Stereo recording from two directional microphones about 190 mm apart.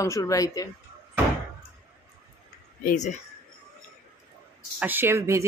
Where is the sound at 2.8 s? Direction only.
40° left (ahead or behind).